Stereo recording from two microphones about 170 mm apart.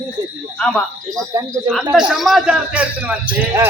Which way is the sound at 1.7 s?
5° right (ahead or behind).